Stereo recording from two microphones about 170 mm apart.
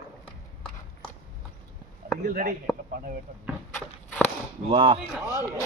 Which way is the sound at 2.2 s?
55° right (ahead or behind).